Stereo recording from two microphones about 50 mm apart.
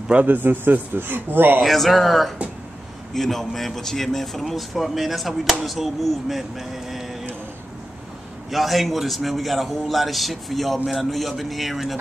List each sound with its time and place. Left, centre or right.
0.3 s a man's voice: right
1.6 s speech: centre
8.5 s speech: centre